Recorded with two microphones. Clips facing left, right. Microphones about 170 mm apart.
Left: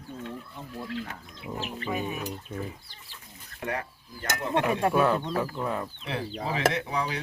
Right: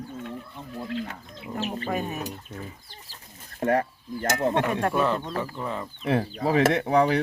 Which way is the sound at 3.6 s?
45° right (ahead or behind).